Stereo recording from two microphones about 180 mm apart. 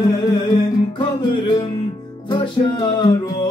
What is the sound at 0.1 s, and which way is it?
Music, 25° left (ahead or behind).